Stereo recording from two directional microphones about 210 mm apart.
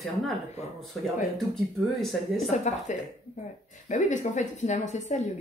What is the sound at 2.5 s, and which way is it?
A woman's voice, 35° left (ahead or behind).